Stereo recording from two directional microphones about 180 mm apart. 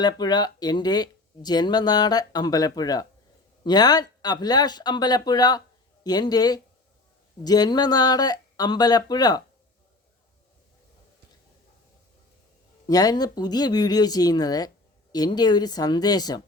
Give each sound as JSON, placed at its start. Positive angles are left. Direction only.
{"t": 0.0, "sound": "speech", "side_deg": 20}
{"t": 12.9, "sound": "speech", "side_deg": 20}